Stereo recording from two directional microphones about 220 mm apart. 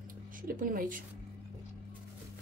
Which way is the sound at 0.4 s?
40° right (ahead or behind).